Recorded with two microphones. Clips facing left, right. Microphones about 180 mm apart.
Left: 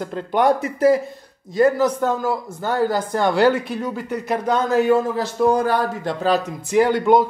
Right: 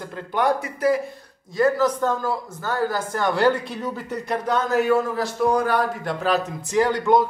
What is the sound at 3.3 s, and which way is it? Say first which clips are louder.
Speech: left 2 dB; 10° left (ahead or behind).